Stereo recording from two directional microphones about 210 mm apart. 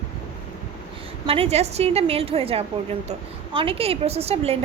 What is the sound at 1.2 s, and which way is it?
A woman's voice, 25° right (ahead or behind).